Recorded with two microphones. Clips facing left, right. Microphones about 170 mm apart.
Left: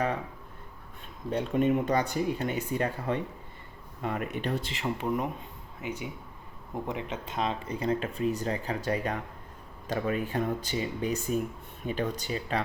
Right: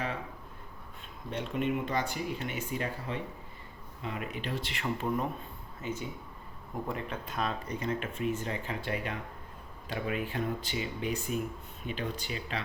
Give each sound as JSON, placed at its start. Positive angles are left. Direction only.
{"t": 1.3, "sound": "speech", "side_deg": 40}
{"t": 4.8, "sound": "speech", "side_deg": 15}
{"t": 6.7, "sound": "a man's voice", "side_deg": 25}